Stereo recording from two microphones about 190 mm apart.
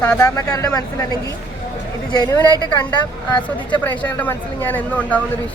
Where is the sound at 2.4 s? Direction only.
20° right (ahead or behind).